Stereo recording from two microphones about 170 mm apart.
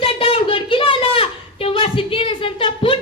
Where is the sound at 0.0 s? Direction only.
35° left (ahead or behind).